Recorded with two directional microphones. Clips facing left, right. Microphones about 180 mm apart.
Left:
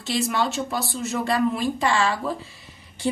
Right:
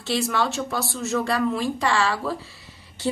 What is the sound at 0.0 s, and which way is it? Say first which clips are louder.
A woman's voice: even; 20° left (ahead or behind).